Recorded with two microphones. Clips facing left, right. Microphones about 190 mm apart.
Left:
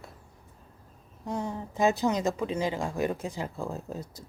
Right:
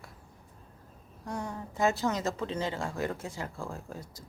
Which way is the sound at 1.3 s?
20° left (ahead or behind).